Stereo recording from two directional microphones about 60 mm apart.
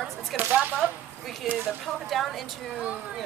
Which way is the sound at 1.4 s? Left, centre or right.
Centre.